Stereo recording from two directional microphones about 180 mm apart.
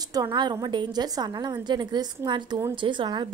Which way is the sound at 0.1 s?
20° right (ahead or behind).